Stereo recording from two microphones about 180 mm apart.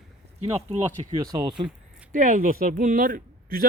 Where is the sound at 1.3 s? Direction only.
25° right (ahead or behind).